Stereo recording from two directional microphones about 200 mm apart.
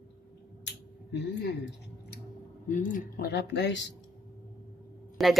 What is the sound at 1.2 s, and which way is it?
Speech, 55° left (ahead or behind).